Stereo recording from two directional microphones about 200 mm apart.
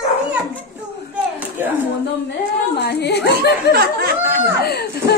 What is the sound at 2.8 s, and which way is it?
Speech, 55° left (ahead or behind).